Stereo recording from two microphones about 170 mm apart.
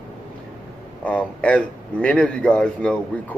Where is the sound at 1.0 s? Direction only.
5° left (ahead or behind).